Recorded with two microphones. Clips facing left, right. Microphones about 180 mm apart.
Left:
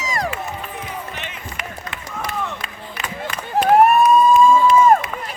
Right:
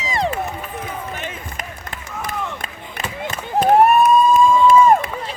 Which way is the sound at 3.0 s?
25° right (ahead or behind).